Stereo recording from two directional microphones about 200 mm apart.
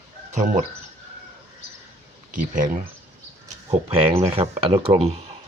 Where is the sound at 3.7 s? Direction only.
30° right (ahead or behind).